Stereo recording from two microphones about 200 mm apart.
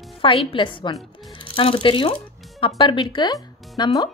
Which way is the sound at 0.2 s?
25° left (ahead or behind).